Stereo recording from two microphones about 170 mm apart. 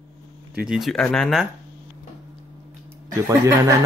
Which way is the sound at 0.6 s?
5° right (ahead or behind).